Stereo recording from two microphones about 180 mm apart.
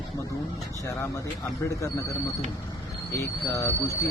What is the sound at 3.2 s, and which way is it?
Speech, 15° left (ahead or behind).